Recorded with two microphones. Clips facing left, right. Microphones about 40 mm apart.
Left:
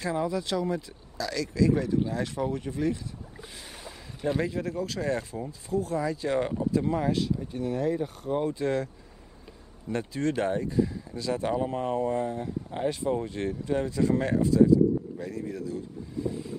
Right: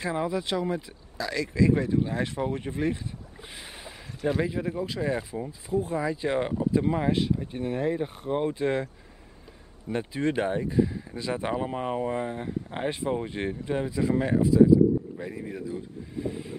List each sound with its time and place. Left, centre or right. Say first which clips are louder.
0.0 s speech: even; right
3.5 s boat: right 3 dB; right
4.2 s a man's voice: right 1 dB; centre; by 16.5 s right